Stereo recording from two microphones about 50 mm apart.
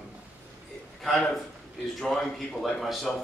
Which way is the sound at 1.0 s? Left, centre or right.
Centre.